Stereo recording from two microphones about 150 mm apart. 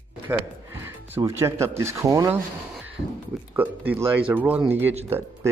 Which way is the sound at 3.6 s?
15° right (ahead or behind).